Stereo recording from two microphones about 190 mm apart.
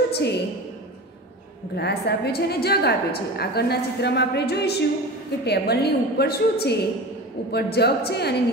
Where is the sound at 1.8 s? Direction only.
60° left (ahead or behind).